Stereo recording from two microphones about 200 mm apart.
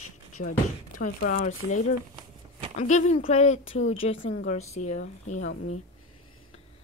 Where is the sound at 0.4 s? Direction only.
70° left (ahead or behind).